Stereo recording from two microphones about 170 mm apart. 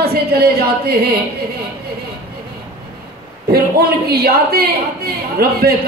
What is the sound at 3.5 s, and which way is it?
A man's voice, 65° right (ahead or behind).